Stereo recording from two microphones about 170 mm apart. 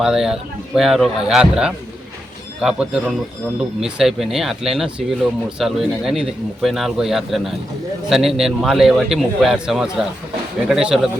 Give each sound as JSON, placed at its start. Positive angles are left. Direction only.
{"t": 0.0, "sound": "a man's voice", "side_deg": -5}